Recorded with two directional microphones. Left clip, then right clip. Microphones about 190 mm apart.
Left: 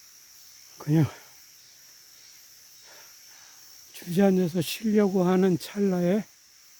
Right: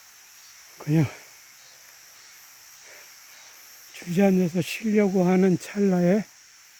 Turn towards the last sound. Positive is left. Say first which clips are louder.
# right 3 dB
turn(degrees=0)  # may be behind; listen again after turning